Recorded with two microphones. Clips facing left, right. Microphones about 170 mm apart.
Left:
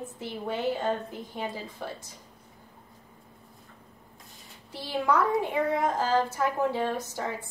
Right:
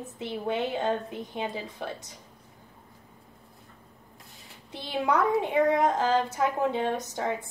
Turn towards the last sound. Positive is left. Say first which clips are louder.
# right 2 dB
turn(degrees=-20)  # may be behind; listen again after turning